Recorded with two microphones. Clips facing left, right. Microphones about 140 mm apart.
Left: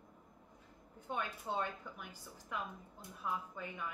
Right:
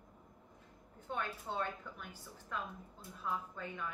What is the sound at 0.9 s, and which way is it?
A woman's voice, 15° left (ahead or behind).